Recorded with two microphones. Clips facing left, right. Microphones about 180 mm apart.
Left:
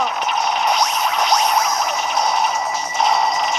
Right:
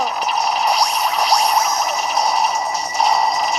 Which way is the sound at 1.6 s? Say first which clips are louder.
Right 1 dB; centre (ahead or behind).